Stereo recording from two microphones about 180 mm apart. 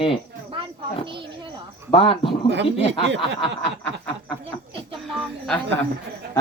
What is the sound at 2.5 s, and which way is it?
Speech, 75° right (ahead or behind).